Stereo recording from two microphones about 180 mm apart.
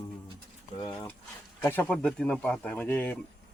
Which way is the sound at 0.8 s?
20° left (ahead or behind).